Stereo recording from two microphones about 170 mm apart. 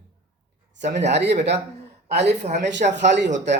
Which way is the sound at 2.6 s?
90° right.